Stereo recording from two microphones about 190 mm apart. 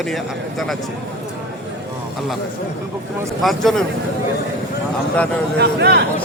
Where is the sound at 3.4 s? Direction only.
Centre (ahead or behind).